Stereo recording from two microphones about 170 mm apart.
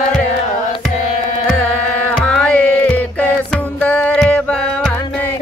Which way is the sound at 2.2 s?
5° left (ahead or behind).